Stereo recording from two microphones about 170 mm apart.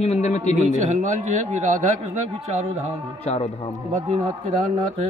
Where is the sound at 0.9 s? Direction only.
45° right (ahead or behind).